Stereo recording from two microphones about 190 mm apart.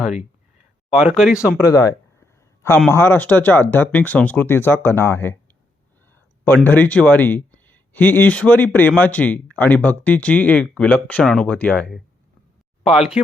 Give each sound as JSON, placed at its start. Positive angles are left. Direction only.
{"t": 0.9, "sound": "speech", "side_deg": -5}
{"t": 1.6, "sound": "a sound", "side_deg": 20}
{"t": 2.9, "sound": "speech", "side_deg": 10}
{"t": 6.7, "sound": "speech", "side_deg": 10}